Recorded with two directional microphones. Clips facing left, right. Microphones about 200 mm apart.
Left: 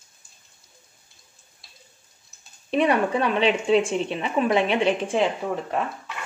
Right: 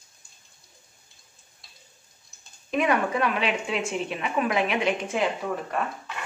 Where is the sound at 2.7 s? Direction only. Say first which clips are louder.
Left 3 dB; 30° left (ahead or behind).